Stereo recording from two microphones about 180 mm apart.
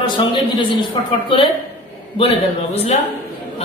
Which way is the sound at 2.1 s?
35° left (ahead or behind).